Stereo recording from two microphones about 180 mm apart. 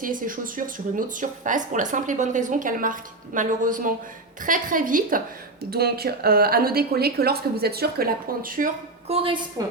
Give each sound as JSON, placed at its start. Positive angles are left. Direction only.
{"t": 0.0, "sound": "speech", "side_deg": -50}
{"t": 5.7, "sound": "a woman's voice", "side_deg": -60}
{"t": 9.0, "sound": "a woman's voice", "side_deg": -30}